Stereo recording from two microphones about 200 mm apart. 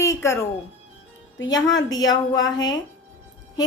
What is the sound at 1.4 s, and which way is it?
A woman's voice, 20° left (ahead or behind).